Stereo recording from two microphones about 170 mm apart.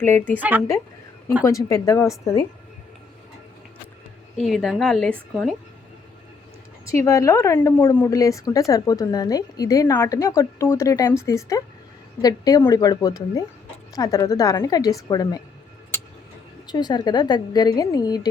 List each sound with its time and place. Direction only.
0.0 s speech: 15° left (ahead or behind)
0.3 s speech: 10° right (ahead or behind)
1.5 s speech: 20° left (ahead or behind)
4.4 s a woman's voice: centre (ahead or behind)
6.8 s speech: 20° left (ahead or behind)
16.6 s speech: 25° left (ahead or behind)